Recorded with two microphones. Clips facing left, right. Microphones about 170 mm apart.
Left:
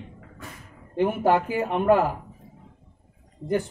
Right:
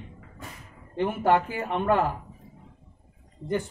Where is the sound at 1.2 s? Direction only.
10° left (ahead or behind).